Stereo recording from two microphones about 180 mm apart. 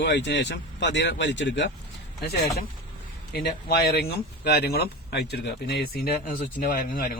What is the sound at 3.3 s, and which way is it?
Speech, 60° left (ahead or behind).